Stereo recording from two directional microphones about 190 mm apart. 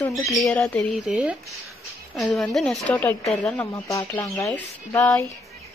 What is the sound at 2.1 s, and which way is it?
Speech, 5° left (ahead or behind).